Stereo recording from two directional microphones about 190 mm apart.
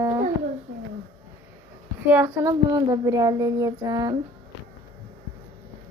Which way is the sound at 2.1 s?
15° right (ahead or behind).